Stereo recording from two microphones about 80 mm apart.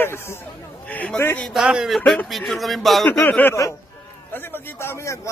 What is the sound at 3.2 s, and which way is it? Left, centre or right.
A man's voice, left.